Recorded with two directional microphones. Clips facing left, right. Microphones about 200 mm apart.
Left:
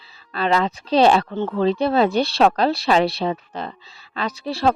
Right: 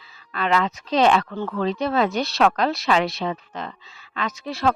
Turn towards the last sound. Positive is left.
turn(degrees=30)  # may be behind; listen again after turning